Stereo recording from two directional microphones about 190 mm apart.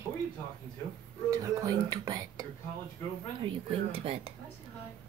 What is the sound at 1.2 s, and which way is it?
Speech, 15° right (ahead or behind).